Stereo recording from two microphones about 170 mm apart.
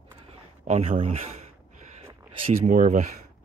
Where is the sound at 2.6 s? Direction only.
50° right (ahead or behind).